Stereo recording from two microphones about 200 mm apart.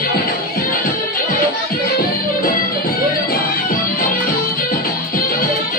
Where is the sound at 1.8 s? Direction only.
45° left (ahead or behind).